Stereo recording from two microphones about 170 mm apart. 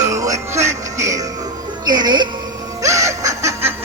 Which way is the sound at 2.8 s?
20° right (ahead or behind).